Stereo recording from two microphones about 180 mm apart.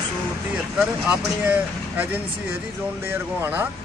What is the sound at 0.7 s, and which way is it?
Speech, 5° right (ahead or behind).